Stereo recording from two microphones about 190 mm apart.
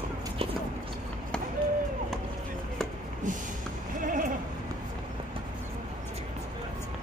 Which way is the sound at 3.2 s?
40° right (ahead or behind).